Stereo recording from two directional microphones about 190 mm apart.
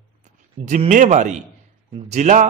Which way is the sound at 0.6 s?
40° right (ahead or behind).